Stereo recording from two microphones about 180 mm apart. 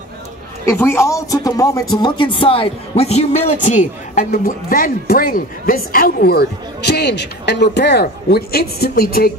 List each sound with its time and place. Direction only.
0.7 s speech: 15° left (ahead or behind); by 9.3 s 55° left (ahead or behind)